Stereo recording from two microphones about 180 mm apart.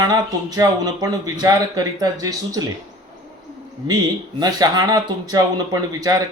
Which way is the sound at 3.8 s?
25° right (ahead or behind).